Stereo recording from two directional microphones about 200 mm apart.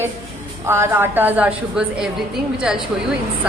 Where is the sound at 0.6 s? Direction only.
10° right (ahead or behind).